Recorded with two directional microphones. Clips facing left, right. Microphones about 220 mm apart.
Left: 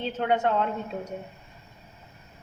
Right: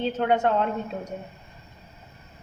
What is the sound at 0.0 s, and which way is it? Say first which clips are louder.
Speech: right 3 dB; 45° right (ahead or behind).